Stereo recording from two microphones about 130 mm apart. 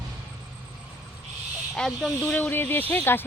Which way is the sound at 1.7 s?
5° left (ahead or behind).